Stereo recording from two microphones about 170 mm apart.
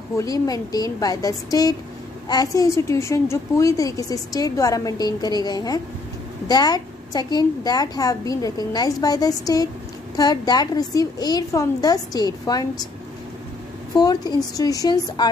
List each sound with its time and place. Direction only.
0.2 s a woman's voice: 20° left (ahead or behind)
13.9 s a woman's voice: 25° left (ahead or behind)